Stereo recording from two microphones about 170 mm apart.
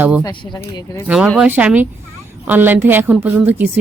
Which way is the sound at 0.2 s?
25° left (ahead or behind).